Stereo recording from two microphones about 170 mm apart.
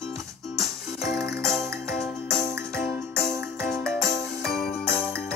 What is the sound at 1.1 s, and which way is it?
Music, 70° left (ahead or behind).